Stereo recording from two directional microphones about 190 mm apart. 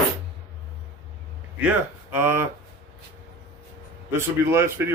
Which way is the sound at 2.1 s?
10° right (ahead or behind).